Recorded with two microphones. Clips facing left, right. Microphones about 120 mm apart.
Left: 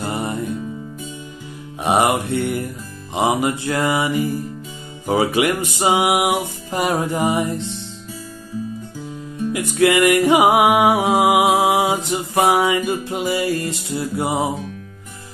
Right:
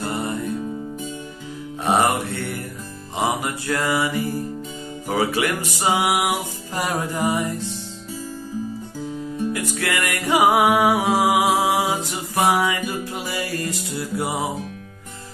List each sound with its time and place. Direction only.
0.0 s music: 20° left (ahead or behind)
1.8 s music: 15° left (ahead or behind)
9.5 s music: 20° left (ahead or behind)